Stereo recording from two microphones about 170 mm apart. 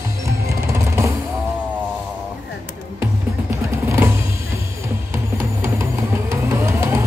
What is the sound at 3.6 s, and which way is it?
Music, 15° right (ahead or behind).